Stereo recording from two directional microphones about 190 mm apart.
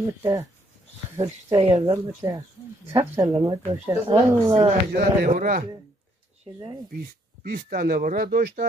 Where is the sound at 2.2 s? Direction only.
20° right (ahead or behind).